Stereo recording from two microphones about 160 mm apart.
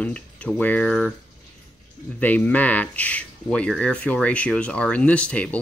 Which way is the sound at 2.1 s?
10° left (ahead or behind).